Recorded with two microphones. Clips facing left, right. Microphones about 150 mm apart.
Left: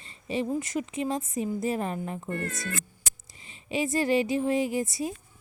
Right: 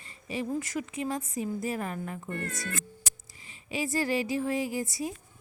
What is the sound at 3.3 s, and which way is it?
A woman's voice, 25° left (ahead or behind).